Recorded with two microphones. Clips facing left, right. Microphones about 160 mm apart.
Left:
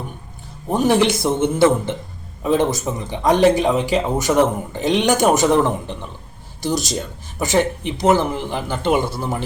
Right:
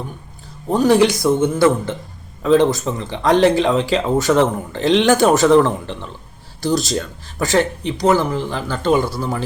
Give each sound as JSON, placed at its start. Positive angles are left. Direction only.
{"t": 0.7, "sound": "speech", "side_deg": 20}